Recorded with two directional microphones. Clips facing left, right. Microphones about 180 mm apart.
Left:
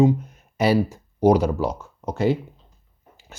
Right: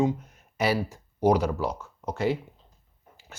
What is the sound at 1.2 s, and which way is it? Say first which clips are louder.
Speech: left 5 dB; 25° left (ahead or behind).